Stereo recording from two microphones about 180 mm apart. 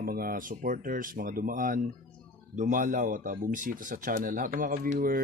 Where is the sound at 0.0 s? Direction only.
55° right (ahead or behind).